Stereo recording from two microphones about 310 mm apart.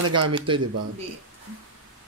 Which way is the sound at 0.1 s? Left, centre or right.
Centre.